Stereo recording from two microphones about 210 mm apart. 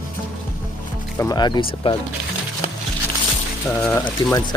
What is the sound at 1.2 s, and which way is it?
Speech, 20° left (ahead or behind).